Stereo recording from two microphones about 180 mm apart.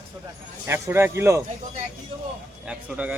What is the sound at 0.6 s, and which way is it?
Speech, 15° right (ahead or behind).